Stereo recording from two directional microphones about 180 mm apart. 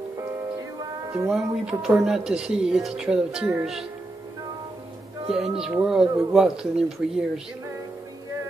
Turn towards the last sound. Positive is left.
turn(degrees=-5)  # may be behind; listen again after turning